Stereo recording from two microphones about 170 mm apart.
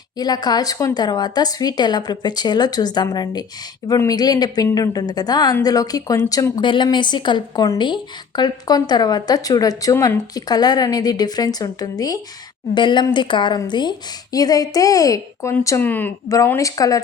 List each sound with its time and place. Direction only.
0.2 s speech: 25° left (ahead or behind)